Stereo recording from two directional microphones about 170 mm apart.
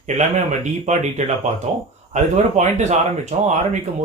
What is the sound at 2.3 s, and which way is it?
Speech, 45° right (ahead or behind).